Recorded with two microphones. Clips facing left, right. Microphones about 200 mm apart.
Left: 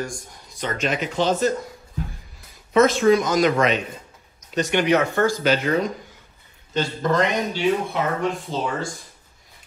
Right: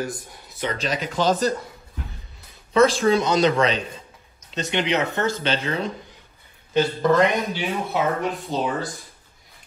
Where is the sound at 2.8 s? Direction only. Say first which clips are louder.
Even; 25° right (ahead or behind).